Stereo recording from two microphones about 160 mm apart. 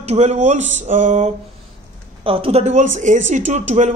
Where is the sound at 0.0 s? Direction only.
45° right (ahead or behind).